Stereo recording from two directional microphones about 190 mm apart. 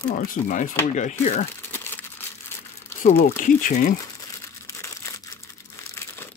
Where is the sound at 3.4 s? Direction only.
45° left (ahead or behind).